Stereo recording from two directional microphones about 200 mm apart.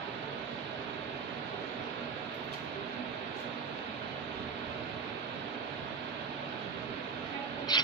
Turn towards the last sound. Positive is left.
turn(degrees=20)  # may be behind; listen again after turning